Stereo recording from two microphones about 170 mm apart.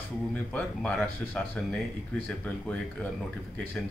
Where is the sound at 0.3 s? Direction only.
10° left (ahead or behind).